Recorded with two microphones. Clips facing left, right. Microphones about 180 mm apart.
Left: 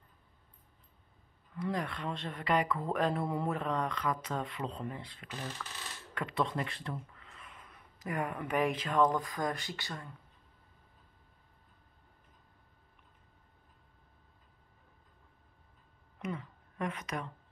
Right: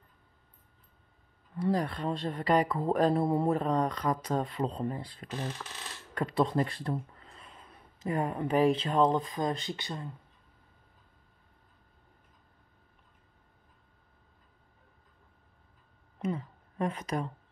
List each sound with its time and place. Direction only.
1.5 s speech: 35° right (ahead or behind)
16.2 s speech: 30° right (ahead or behind)